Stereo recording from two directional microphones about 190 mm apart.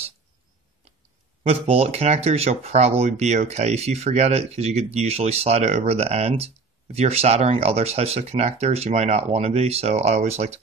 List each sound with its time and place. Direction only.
1.4 s speech: 30° right (ahead or behind)